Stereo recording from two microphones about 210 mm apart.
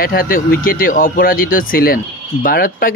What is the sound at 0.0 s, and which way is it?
Speech, 45° left (ahead or behind).